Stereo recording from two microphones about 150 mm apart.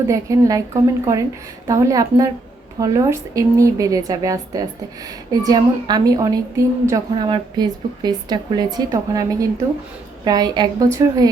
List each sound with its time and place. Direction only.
0.1 s a woman's voice: 25° right (ahead or behind)